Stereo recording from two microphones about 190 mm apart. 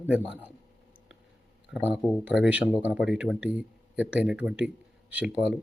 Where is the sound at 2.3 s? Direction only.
5° right (ahead or behind).